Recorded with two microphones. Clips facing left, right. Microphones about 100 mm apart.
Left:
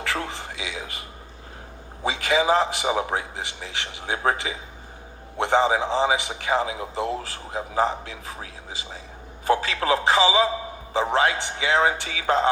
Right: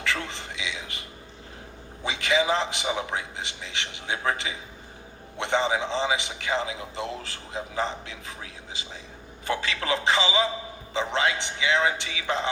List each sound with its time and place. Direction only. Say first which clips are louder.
0.0 s a man's voice: left 2 dB; 40° left (ahead or behind)
2.0 s a man's voice: left 3 dB; 40° left (ahead or behind)
9.5 s a man's voice: left 6 dB; 35° left (ahead or behind)